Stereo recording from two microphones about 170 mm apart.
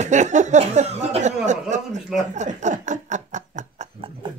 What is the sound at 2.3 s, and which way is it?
Snicker, 45° right (ahead or behind).